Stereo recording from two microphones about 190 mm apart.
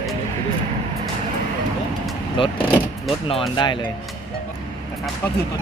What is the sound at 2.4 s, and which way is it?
Speech, 25° left (ahead or behind).